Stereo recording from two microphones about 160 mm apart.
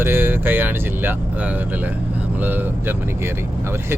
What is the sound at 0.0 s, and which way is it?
Speech, 15° right (ahead or behind).